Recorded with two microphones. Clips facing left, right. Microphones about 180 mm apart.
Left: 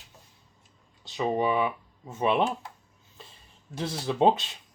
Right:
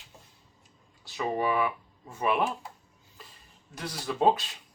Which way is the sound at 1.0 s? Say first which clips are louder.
Left 3 dB; 20° left (ahead or behind).